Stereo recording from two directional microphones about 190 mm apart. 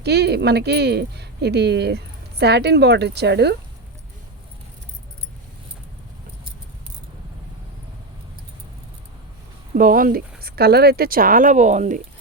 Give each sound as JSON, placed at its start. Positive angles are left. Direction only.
{"t": 0.0, "sound": "speech", "side_deg": -60}
{"t": 9.7, "sound": "speech", "side_deg": -45}